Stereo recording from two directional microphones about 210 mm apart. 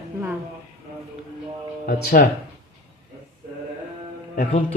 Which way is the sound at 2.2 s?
45° left (ahead or behind).